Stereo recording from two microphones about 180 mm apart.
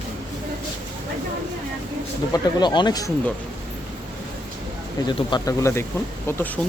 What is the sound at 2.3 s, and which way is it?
Speech, 25° left (ahead or behind).